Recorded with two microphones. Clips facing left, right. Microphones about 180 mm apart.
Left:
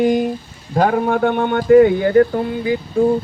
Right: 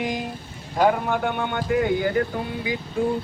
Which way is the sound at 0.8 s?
60° left (ahead or behind).